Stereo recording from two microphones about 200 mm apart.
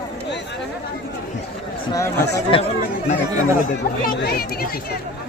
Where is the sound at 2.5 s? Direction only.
25° left (ahead or behind).